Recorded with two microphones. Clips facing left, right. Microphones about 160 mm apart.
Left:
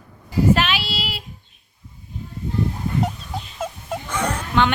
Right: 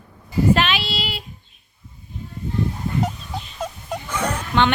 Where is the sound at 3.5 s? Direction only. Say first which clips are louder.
Left 1 dB; 5° left (ahead or behind).